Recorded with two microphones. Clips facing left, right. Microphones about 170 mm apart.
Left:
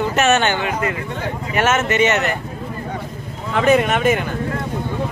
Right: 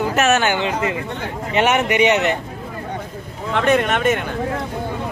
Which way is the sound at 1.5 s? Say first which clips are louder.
Right 1 dB; 15° right (ahead or behind).